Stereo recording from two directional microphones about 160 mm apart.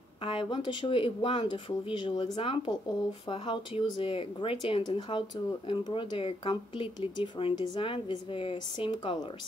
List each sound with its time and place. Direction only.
0.2 s speech: 35° left (ahead or behind)